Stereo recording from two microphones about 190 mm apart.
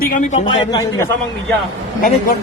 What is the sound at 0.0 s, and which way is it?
Speech, 45° left (ahead or behind).